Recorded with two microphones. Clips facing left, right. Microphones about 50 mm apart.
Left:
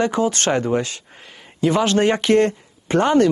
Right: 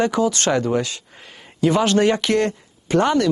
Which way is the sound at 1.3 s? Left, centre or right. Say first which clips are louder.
Even; centre.